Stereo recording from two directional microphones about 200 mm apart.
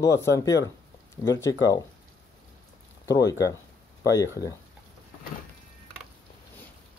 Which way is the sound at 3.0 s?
15° left (ahead or behind).